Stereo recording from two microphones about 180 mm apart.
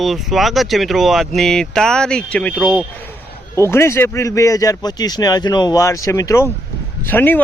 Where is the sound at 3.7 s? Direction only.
15° left (ahead or behind).